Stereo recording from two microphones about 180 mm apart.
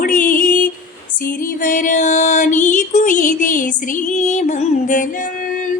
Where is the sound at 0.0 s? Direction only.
45° left (ahead or behind).